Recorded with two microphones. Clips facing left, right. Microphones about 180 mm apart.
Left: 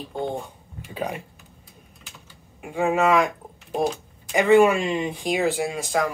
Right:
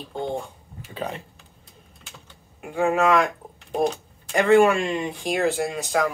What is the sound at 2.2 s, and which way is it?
Speech, centre (ahead or behind).